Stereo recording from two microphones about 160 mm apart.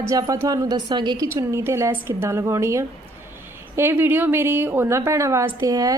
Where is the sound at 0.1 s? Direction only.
20° right (ahead or behind).